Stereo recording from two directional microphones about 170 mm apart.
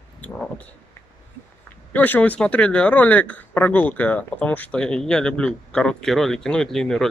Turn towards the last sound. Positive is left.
turn(degrees=5)  # may be behind; listen again after turning